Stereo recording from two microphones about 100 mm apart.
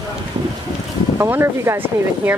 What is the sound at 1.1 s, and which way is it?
Speech, 25° right (ahead or behind).